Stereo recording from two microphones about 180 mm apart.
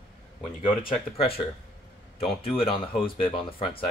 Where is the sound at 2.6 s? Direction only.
30° left (ahead or behind).